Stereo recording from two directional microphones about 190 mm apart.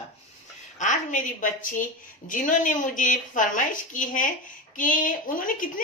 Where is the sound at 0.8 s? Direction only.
40° left (ahead or behind).